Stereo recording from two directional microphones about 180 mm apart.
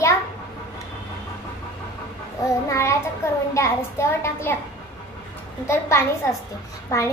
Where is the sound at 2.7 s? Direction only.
15° left (ahead or behind).